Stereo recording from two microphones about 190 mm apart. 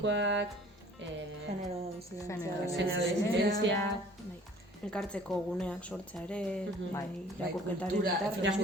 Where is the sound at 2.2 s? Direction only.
15° left (ahead or behind).